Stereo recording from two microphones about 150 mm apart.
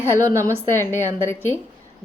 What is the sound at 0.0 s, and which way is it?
Speech, 20° right (ahead or behind).